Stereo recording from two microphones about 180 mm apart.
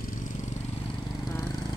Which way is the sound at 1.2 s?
20° left (ahead or behind).